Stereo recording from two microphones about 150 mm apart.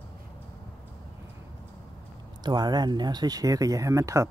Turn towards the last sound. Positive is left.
turn(degrees=-20)  # may be behind; listen again after turning